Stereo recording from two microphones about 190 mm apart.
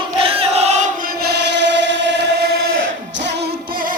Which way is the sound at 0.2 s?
30° right (ahead or behind).